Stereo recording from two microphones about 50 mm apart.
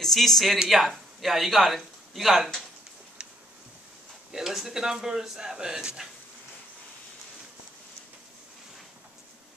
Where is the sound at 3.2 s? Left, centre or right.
Centre.